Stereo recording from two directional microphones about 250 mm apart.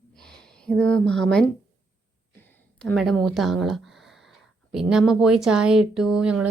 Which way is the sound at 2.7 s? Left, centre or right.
Centre.